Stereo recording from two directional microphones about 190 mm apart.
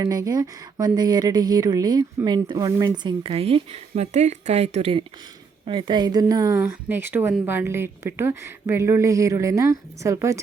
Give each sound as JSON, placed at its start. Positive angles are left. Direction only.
{"t": 0.0, "sound": "a woman's voice", "side_deg": -20}